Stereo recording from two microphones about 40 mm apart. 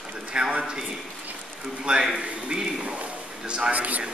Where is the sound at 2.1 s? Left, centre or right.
Centre.